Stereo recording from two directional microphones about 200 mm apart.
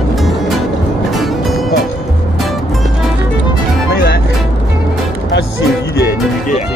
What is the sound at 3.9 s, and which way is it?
Music, 50° left (ahead or behind).